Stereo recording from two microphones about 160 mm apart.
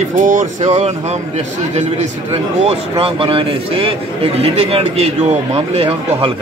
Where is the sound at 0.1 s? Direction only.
50° right (ahead or behind).